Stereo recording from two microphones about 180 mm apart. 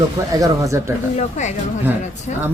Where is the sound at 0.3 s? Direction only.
20° right (ahead or behind).